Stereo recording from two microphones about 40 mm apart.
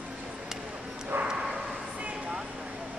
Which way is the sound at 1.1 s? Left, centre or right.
Right.